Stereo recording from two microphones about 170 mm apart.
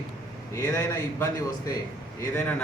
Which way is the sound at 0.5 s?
20° left (ahead or behind).